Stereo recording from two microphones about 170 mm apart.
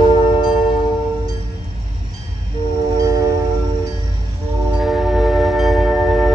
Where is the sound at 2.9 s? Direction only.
20° right (ahead or behind).